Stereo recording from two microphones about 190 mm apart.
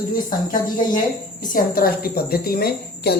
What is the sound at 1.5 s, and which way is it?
A woman's voice, 50° left (ahead or behind).